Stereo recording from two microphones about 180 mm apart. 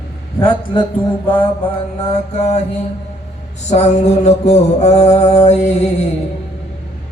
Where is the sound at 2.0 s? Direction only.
35° left (ahead or behind).